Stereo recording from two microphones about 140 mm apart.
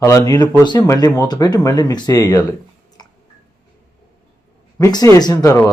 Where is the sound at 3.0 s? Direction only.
30° left (ahead or behind).